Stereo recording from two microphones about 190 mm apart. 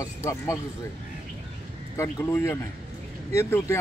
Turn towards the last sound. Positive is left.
turn(degrees=15)  # may be behind; listen again after turning